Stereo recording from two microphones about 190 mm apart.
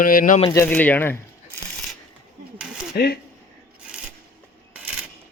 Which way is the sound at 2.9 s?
60° left (ahead or behind).